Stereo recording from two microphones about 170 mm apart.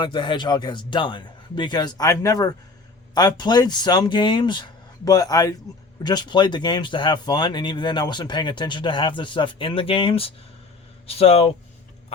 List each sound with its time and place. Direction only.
0.0 s speech: 30° left (ahead or behind)